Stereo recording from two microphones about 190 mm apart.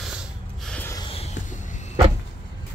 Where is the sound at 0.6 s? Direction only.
5° left (ahead or behind).